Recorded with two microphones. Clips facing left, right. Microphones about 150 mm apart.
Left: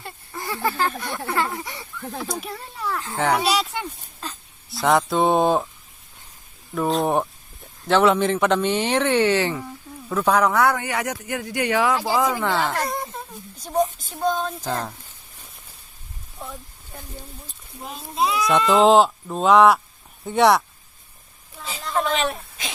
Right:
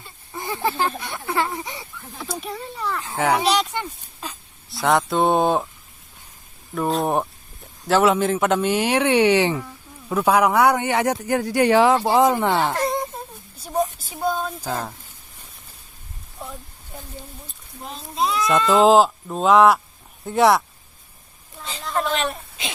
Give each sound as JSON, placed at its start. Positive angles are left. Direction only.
{"t": 0.3, "sound": "speech", "side_deg": -20}
{"t": 2.2, "sound": "speech", "side_deg": 0}
{"t": 4.2, "sound": "a sound", "side_deg": -10}
{"t": 4.7, "sound": "speech", "side_deg": 0}
{"t": 6.7, "sound": "speech", "side_deg": 0}
{"t": 13.6, "sound": "speech", "side_deg": -5}
{"t": 16.4, "sound": "a sound", "side_deg": 0}
{"t": 17.7, "sound": "speech", "side_deg": 0}
{"t": 21.6, "sound": "a sound", "side_deg": 0}